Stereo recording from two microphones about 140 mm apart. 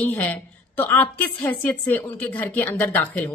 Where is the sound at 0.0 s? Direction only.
10° left (ahead or behind).